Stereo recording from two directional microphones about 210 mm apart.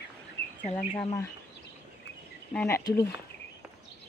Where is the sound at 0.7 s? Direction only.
30° left (ahead or behind).